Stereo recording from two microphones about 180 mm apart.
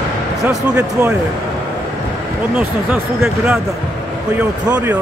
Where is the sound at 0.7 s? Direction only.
5° right (ahead or behind).